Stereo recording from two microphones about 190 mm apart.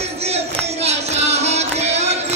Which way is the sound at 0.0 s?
35° right (ahead or behind).